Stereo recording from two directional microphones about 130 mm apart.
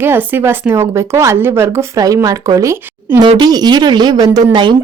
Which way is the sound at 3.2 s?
35° right (ahead or behind).